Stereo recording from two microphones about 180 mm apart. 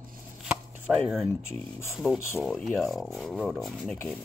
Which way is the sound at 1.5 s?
15° left (ahead or behind).